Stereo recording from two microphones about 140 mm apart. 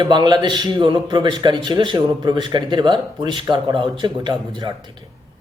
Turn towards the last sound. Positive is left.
turn(degrees=-35)  # may be behind; listen again after turning